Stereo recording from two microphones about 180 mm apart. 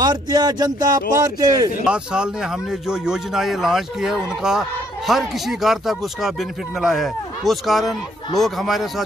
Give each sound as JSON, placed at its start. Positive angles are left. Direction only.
{"t": 0.0, "sound": "speech", "side_deg": -25}
{"t": 1.9, "sound": "speech", "side_deg": -5}